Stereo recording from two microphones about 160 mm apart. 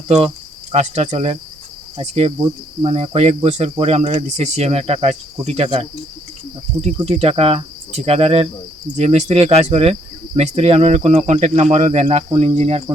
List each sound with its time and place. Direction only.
0.7 s speech: 45° right (ahead or behind)
6.8 s speech: 40° right (ahead or behind)